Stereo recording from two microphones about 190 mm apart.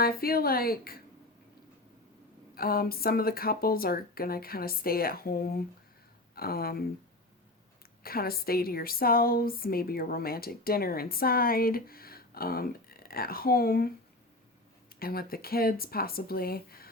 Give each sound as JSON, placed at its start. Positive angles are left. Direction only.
{"t": 0.0, "sound": "a woman's voice", "side_deg": 50}
{"t": 2.6, "sound": "a woman's voice", "side_deg": 50}
{"t": 8.0, "sound": "a woman's voice", "side_deg": 50}
{"t": 14.9, "sound": "a woman's voice", "side_deg": 50}